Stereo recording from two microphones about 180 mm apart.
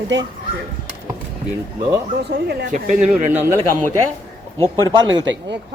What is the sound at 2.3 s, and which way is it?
Speech, 65° right (ahead or behind).